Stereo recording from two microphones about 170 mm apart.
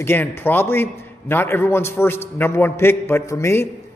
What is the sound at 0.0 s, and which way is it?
A man's voice, 15° left (ahead or behind).